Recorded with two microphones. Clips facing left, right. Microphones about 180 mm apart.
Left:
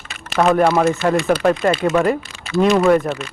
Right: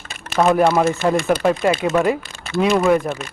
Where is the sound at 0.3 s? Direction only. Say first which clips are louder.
Even; centre (ahead or behind).